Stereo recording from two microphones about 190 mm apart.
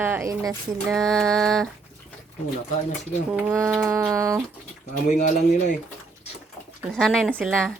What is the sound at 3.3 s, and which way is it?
Speech, 15° right (ahead or behind).